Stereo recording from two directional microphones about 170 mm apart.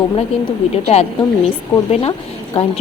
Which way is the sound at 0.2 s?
35° left (ahead or behind).